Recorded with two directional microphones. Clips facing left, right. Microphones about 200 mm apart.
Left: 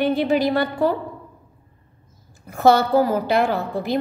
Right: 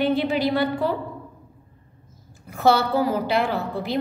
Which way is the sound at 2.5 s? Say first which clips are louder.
Left 4 dB; 45° left (ahead or behind).